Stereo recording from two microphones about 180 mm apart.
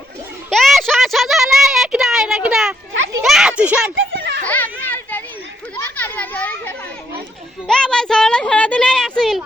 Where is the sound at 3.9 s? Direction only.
80° right.